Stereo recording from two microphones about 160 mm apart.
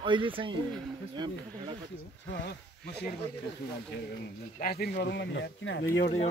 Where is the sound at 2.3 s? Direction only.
90° left.